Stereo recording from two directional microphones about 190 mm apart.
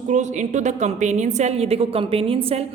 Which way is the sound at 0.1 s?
40° right (ahead or behind).